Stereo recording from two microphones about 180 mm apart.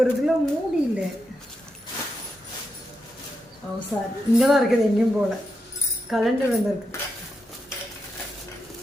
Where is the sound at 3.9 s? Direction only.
10° left (ahead or behind).